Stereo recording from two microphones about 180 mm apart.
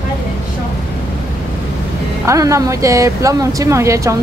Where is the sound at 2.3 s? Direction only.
15° right (ahead or behind).